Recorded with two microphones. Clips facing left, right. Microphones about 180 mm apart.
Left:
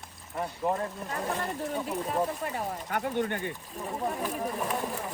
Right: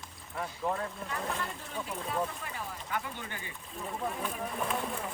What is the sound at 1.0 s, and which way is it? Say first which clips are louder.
Speech: left 4 dB; 40° left (ahead or behind).